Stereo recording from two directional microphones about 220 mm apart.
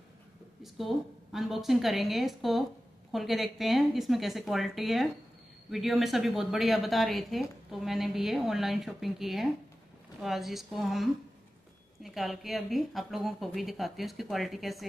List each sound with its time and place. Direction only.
0.6 s a woman's voice: centre (ahead or behind)